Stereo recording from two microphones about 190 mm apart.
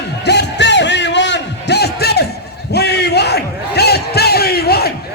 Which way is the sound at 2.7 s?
60° left (ahead or behind).